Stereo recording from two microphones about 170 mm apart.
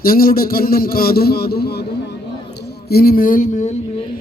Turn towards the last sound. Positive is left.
turn(degrees=45)  # may be behind; listen again after turning